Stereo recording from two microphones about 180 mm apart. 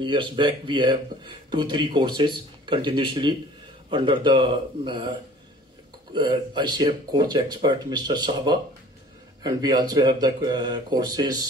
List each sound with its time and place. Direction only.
0.0 s a man's voice: 25° right (ahead or behind)
6.1 s a man's voice: 25° right (ahead or behind)